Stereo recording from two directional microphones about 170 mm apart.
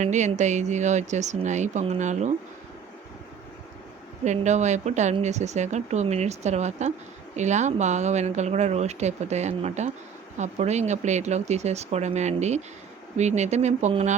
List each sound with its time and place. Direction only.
0.0 s speech: 45° right (ahead or behind)
4.2 s speech: 45° right (ahead or behind)